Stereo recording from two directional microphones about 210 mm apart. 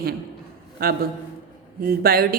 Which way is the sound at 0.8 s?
45° right (ahead or behind).